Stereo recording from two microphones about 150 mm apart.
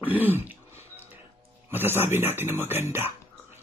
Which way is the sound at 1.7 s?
15° right (ahead or behind).